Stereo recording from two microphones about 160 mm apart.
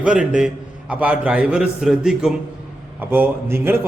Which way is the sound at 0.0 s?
5° right (ahead or behind).